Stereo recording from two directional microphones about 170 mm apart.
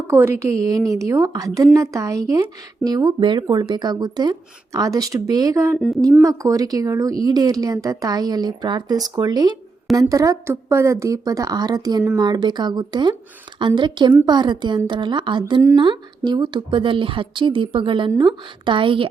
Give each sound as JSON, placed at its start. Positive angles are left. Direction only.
{"t": 0.1, "sound": "speech", "side_deg": -15}
{"t": 5.7, "sound": "a woman's voice", "side_deg": 0}
{"t": 6.2, "sound": "speech", "side_deg": -20}